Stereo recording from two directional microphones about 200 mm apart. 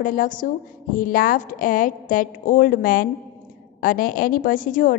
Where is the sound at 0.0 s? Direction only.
40° left (ahead or behind).